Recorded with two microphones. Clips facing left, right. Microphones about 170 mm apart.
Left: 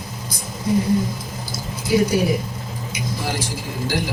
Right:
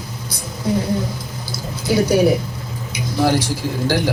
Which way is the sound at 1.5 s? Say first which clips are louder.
Right 1 dB; 70° right (ahead or behind).